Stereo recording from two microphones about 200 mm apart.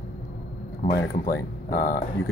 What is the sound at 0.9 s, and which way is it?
Speech, 50° left (ahead or behind).